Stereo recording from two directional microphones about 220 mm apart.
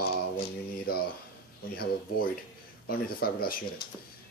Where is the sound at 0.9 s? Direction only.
45° left (ahead or behind).